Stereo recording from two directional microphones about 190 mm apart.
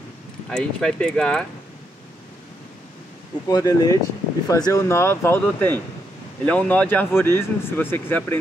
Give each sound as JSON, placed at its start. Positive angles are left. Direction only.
{"t": 0.5, "sound": "speech", "side_deg": 5}
{"t": 3.4, "sound": "speech", "side_deg": 20}